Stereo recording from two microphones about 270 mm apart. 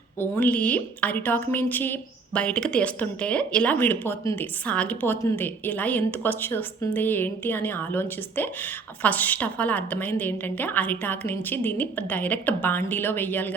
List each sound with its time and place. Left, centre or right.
0.2 s a woman's voice: centre